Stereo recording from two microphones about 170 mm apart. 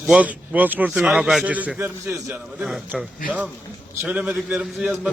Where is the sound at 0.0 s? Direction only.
5° right (ahead or behind).